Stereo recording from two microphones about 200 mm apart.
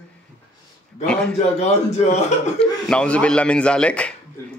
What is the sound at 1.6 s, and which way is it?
Speech, 35° left (ahead or behind).